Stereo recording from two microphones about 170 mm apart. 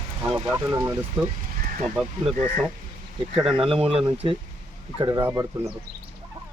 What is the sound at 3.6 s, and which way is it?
Speech, 35° right (ahead or behind).